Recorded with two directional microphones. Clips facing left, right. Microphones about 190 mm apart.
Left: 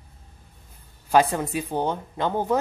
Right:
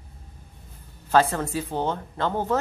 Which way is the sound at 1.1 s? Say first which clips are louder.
Left 1 dB; 15° left (ahead or behind).